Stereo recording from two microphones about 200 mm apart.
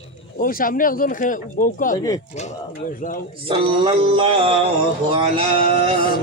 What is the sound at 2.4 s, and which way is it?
Speech, 40° left (ahead or behind).